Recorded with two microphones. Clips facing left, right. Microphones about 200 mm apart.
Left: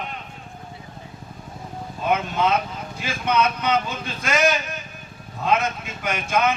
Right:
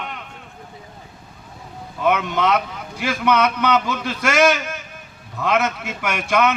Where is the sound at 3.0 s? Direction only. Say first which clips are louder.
Right 4 dB; 70° right (ahead or behind).